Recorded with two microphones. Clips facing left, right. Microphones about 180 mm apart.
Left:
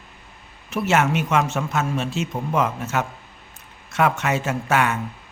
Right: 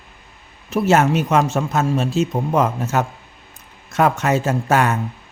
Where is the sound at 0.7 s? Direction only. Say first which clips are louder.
Right 5 dB; 35° right (ahead or behind).